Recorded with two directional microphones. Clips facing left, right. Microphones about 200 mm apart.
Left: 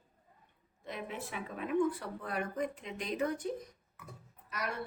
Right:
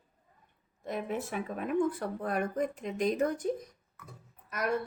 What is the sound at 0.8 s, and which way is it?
Speech, 45° right (ahead or behind).